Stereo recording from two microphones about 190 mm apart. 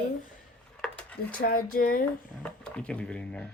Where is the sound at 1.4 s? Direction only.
50° left (ahead or behind).